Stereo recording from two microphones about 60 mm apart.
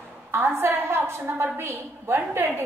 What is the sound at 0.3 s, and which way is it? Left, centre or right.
A woman's voice, right.